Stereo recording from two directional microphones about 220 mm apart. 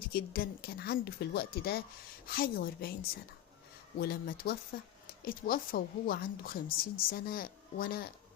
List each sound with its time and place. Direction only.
0.1 s speech: 40° left (ahead or behind)